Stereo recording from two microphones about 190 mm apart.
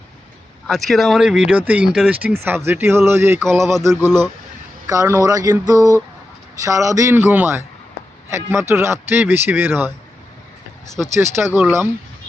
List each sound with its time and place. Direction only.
0.7 s speech: centre (ahead or behind)
3.6 s music: centre (ahead or behind)
3.8 s speech: 10° right (ahead or behind)
11.1 s speech: 15° right (ahead or behind)